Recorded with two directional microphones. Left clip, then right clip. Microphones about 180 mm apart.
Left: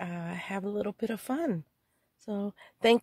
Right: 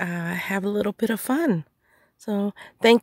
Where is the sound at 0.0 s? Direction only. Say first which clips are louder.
Right 10 dB; 40° right (ahead or behind).